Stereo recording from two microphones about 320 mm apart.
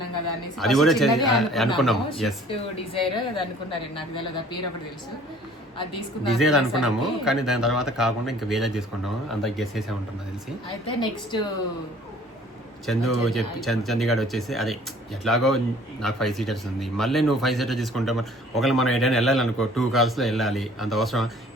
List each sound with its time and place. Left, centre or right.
0.0 s a sound: left
0.5 s speech: centre
2.5 s a woman's voice: centre
6.6 s speech: centre
10.8 s a woman's voice: centre
12.8 s speech: centre